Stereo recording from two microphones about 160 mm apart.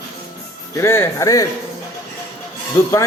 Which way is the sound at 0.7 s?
15° left (ahead or behind).